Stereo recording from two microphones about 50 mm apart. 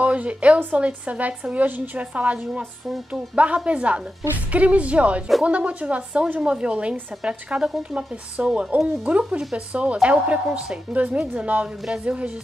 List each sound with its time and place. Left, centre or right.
0.0 s a woman's voice: right